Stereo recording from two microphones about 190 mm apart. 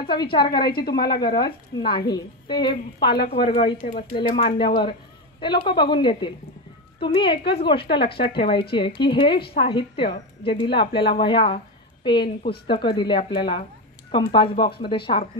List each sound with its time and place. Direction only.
0.0 s a woman's voice: 25° left (ahead or behind)
0.7 s speech: 55° left (ahead or behind)
1.8 s a woman's voice: 25° left (ahead or behind)